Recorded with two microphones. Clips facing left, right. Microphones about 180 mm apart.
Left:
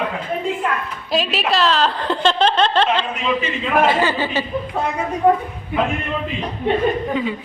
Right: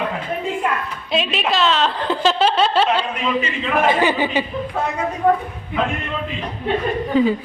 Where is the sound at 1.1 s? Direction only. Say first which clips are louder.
Left 1 dB; centre (ahead or behind); by 4.4 s 15° right (ahead or behind).